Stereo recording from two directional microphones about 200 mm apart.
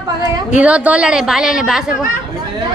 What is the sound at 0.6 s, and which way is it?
Speech, 5° right (ahead or behind).